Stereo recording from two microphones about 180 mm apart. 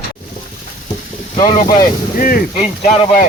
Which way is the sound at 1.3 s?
45° left (ahead or behind).